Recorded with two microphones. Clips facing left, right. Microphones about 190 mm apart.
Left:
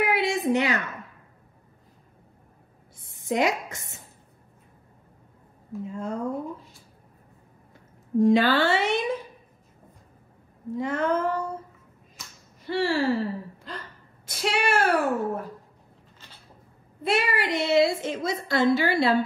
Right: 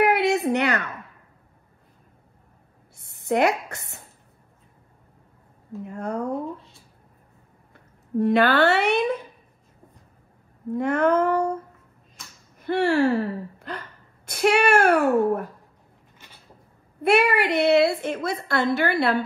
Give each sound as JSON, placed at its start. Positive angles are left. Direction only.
{"t": 0.0, "sound": "a sound", "side_deg": -65}
{"t": 3.0, "sound": "a woman's voice", "side_deg": -60}
{"t": 5.9, "sound": "a woman's voice", "side_deg": -65}
{"t": 7.7, "sound": "speech", "side_deg": -60}
{"t": 10.7, "sound": "a woman's voice", "side_deg": -60}
{"t": 12.2, "sound": "a sound", "side_deg": 0}
{"t": 12.5, "sound": "a woman's voice", "side_deg": -55}
{"t": 17.0, "sound": "a woman's voice", "side_deg": -60}